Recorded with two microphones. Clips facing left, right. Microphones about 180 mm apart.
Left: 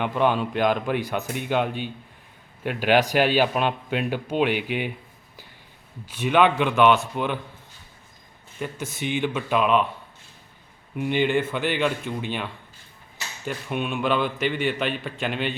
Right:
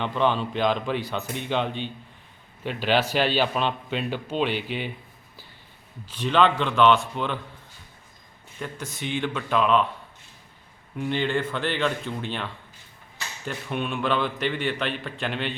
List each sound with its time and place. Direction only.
0.0 s a man's voice: 10° left (ahead or behind)
6.1 s a man's voice: 10° left (ahead or behind)
8.6 s a man's voice: 10° left (ahead or behind)
10.9 s a man's voice: 15° left (ahead or behind)